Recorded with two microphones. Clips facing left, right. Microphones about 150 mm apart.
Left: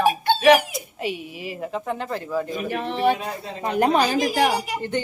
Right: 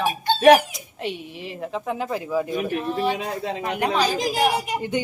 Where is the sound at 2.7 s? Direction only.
75° left (ahead or behind).